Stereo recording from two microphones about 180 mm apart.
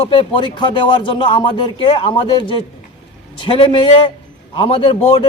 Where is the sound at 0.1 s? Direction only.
25° left (ahead or behind).